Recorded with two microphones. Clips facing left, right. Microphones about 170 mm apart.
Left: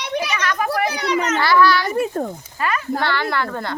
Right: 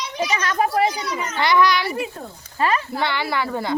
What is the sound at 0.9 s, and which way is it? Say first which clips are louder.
Speech: left 6 dB; 70° left (ahead or behind).